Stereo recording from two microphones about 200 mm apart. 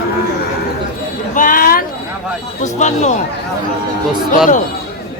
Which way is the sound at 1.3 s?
40° left (ahead or behind).